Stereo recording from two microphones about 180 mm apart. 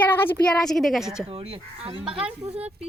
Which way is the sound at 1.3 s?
30° right (ahead or behind).